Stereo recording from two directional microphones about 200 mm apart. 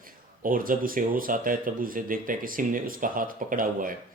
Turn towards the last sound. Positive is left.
turn(degrees=-45)  # may be behind; listen again after turning